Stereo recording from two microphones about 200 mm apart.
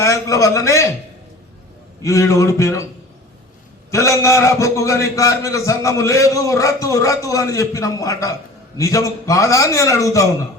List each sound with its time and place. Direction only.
0.0 s a man's voice: 15° left (ahead or behind)
2.0 s a man's voice: 15° left (ahead or behind)
3.9 s a man's voice: 15° left (ahead or behind)